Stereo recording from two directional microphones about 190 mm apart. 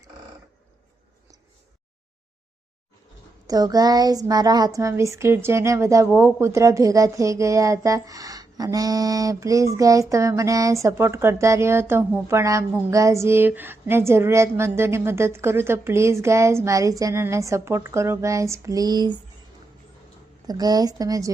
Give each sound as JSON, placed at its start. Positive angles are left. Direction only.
{"t": 3.4, "sound": "speech", "side_deg": -20}
{"t": 20.5, "sound": "a woman's voice", "side_deg": -20}